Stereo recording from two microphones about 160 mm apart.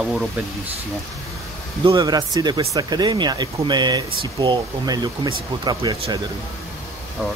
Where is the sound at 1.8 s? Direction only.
25° right (ahead or behind).